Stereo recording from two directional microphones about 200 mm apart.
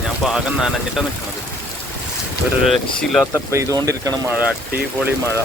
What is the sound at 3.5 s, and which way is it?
Speech, 15° right (ahead or behind).